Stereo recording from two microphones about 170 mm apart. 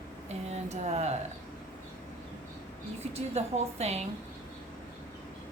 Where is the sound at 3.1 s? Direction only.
40° right (ahead or behind).